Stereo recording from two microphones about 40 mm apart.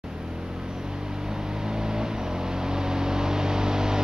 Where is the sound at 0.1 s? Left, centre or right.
Centre.